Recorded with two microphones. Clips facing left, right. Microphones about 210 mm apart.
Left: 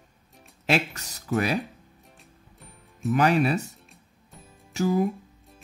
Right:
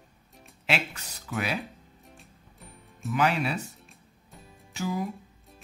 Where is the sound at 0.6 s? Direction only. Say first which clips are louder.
Left 5 dB; 40° left (ahead or behind).